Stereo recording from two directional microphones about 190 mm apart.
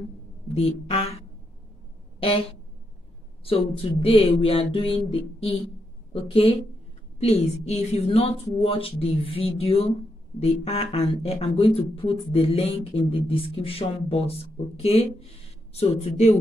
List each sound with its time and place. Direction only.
0.6 s speech: 30° left (ahead or behind)
2.1 s a sound: 30° left (ahead or behind)
3.4 s speech: 30° left (ahead or behind)